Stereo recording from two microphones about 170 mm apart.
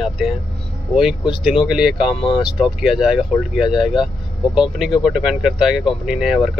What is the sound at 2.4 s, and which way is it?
Speech, 5° right (ahead or behind).